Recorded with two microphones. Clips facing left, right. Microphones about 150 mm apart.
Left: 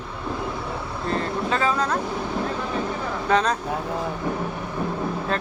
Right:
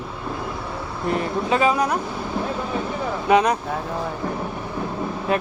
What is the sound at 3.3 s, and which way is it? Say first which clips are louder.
Speech: right 4 dB; 15° right (ahead or behind).